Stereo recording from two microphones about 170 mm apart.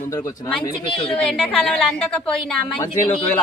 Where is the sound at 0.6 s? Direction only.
30° left (ahead or behind).